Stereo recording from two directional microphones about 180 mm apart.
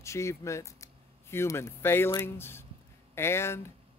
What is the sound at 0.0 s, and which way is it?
Speech, 15° left (ahead or behind).